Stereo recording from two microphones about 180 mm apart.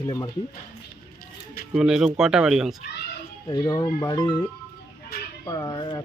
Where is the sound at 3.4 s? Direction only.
20° left (ahead or behind).